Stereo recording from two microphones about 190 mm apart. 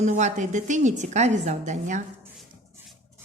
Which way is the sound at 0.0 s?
40° right (ahead or behind).